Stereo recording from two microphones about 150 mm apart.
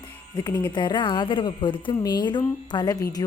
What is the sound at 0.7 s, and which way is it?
Speech, 30° left (ahead or behind).